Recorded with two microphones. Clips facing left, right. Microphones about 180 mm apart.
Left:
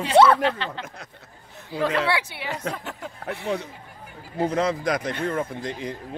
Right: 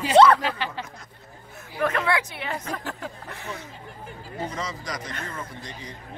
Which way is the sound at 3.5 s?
70° left (ahead or behind).